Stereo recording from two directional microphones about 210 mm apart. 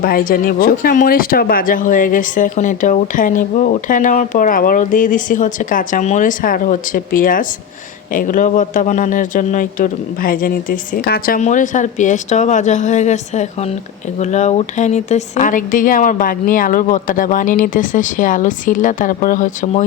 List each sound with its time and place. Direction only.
0.0 s speech: 45° left (ahead or behind)